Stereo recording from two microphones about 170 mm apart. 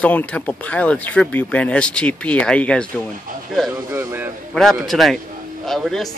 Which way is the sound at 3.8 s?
15° right (ahead or behind).